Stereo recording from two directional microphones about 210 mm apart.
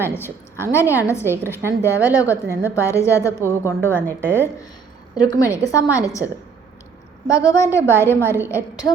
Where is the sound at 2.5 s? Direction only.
10° right (ahead or behind).